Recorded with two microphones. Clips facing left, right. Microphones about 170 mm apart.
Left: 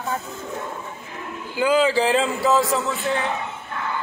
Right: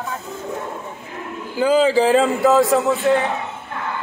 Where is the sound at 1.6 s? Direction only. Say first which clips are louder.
Right 3 dB; 40° right (ahead or behind).